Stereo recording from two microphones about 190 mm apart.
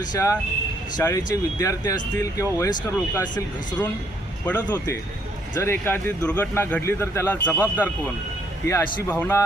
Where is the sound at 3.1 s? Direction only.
20° left (ahead or behind).